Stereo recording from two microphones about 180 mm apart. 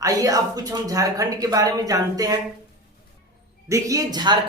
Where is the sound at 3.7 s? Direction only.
20° right (ahead or behind).